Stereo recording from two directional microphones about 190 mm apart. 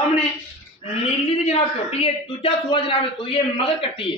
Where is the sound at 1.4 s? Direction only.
30° left (ahead or behind).